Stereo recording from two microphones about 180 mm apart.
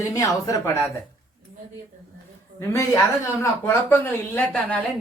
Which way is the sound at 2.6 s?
15° left (ahead or behind).